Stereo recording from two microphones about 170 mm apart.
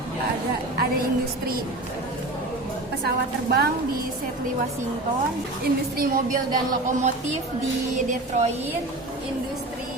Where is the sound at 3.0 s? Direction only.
70° right (ahead or behind).